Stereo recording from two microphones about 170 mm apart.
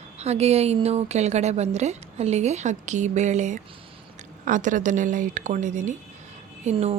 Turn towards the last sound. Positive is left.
turn(degrees=-40)  # may be behind; listen again after turning